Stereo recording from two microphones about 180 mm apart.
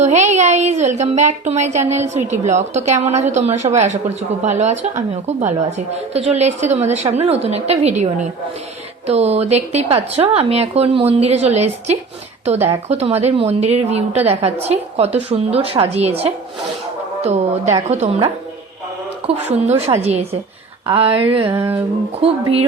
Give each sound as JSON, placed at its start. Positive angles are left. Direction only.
{"t": 0.0, "sound": "a woman's voice", "side_deg": -40}
{"t": 21.5, "sound": "speech", "side_deg": -15}
{"t": 22.2, "sound": "a woman's voice", "side_deg": -35}